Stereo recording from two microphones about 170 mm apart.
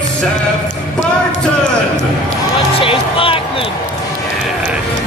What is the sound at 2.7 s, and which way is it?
Music, 30° left (ahead or behind).